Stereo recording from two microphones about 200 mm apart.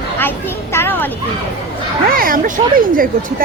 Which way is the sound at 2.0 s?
45° right (ahead or behind).